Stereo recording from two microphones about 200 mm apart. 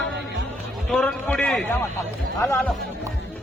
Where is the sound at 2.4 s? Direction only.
15° left (ahead or behind).